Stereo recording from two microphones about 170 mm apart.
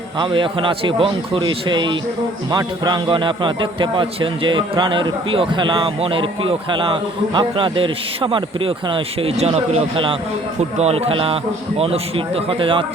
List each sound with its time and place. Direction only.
0.2 s a man's voice: 30° right (ahead or behind)